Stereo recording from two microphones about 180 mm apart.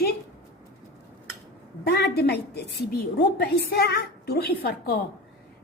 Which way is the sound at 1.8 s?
60° left (ahead or behind).